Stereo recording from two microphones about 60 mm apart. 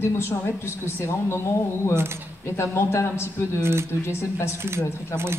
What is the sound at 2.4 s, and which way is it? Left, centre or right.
A woman's voice, left.